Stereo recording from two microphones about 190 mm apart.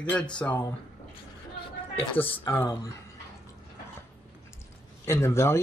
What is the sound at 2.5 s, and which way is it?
Speech, 20° left (ahead or behind).